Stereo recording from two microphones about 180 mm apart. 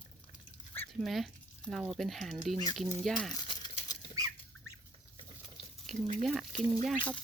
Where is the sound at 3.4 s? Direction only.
25° left (ahead or behind).